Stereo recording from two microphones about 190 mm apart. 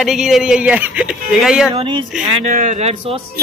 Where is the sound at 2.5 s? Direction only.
40° right (ahead or behind).